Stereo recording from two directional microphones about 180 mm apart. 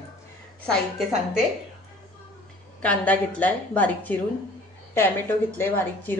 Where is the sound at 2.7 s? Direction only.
10° left (ahead or behind).